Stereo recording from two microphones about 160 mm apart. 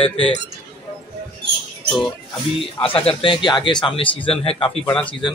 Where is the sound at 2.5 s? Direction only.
35° left (ahead or behind).